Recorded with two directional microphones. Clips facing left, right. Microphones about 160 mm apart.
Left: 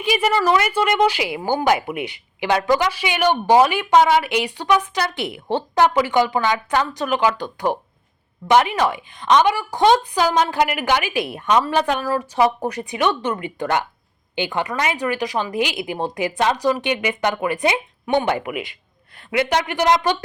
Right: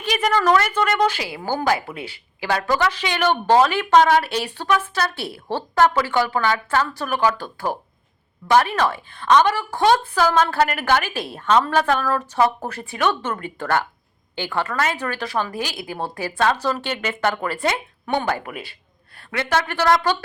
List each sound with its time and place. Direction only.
0.0 s speech: 5° left (ahead or behind)